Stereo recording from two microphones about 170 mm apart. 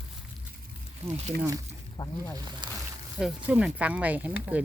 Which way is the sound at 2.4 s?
25° right (ahead or behind).